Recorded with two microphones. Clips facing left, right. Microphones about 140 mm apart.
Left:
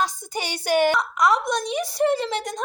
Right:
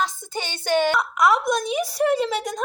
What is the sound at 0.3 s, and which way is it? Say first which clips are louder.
Speech: left 1 dB; 10° left (ahead or behind).